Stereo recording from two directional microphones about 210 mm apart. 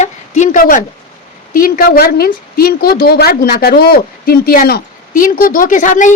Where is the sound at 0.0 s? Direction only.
35° left (ahead or behind).